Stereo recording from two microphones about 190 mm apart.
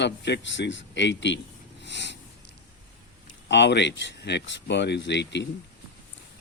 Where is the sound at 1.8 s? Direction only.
65° left (ahead or behind).